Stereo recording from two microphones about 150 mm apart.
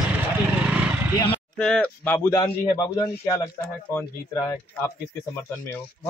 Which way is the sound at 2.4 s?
25° left (ahead or behind).